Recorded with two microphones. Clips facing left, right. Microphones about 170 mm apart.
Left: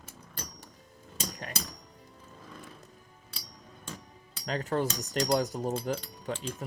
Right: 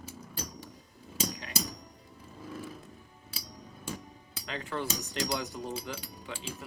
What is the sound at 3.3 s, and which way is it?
Hammer, 5° right (ahead or behind).